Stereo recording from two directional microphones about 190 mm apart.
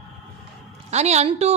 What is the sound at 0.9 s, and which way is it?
Speech, 35° right (ahead or behind).